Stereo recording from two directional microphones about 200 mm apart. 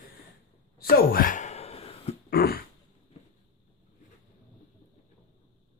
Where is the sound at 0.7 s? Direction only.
45° left (ahead or behind); by 2.1 s 30° left (ahead or behind).